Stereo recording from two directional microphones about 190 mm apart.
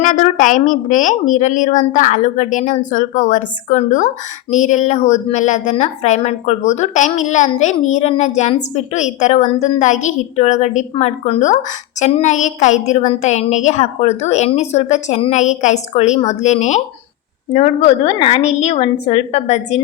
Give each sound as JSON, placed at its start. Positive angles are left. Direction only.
{"t": 0.0, "sound": "a woman's voice", "side_deg": 45}